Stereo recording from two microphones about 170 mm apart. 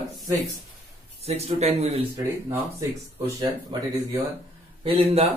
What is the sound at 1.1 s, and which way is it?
Speech, 40° right (ahead or behind).